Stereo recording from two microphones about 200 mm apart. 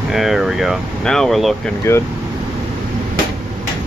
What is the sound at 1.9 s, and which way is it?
Speech, 15° left (ahead or behind).